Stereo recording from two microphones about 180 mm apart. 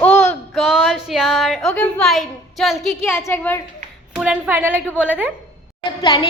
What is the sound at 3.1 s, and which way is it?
Speech, 10° left (ahead or behind).